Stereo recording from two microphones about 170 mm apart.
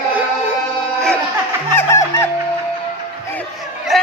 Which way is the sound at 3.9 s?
Centre (ahead or behind).